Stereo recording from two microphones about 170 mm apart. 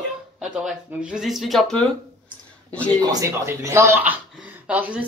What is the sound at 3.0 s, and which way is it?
Speech, 20° right (ahead or behind).